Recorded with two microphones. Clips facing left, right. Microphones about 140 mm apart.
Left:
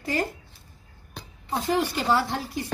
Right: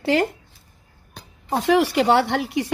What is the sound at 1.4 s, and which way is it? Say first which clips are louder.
A woman's voice: right 7 dB; 85° right.